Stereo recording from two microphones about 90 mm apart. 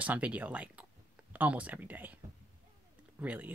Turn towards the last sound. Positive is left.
turn(degrees=-20)  # may be behind; listen again after turning